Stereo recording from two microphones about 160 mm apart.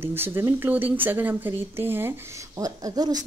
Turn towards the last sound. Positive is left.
turn(degrees=-25)  # may be behind; listen again after turning